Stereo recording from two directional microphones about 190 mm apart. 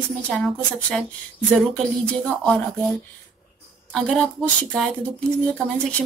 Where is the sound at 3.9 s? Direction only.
5° left (ahead or behind).